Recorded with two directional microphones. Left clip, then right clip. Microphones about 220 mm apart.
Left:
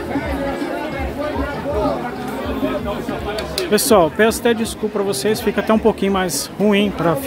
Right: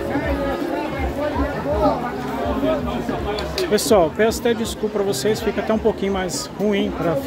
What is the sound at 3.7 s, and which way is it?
Speech, 15° left (ahead or behind).